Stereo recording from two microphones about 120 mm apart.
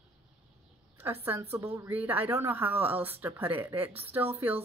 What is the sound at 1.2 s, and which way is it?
Speech, 20° right (ahead or behind).